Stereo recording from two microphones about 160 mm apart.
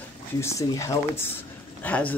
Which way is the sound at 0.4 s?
20° left (ahead or behind).